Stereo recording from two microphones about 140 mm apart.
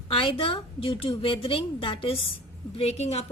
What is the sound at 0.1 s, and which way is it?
A woman's voice, 40° left (ahead or behind).